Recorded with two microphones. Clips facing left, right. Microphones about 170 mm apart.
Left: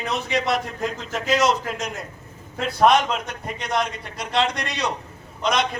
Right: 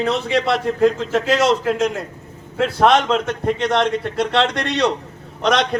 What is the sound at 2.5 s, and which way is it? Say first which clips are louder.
A man's voice: right 3 dB; 70° right (ahead or behind).